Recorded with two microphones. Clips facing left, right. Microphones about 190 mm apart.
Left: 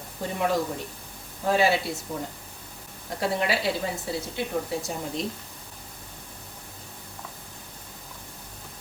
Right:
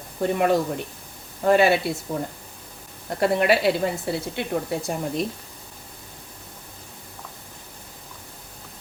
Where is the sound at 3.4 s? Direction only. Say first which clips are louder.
Right 7 dB; 60° right (ahead or behind).